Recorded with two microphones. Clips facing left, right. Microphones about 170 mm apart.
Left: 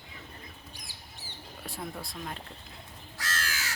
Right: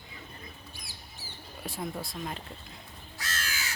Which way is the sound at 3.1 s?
85° left.